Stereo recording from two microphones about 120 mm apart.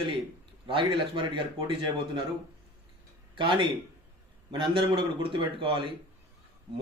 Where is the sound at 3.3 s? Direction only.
45° right (ahead or behind).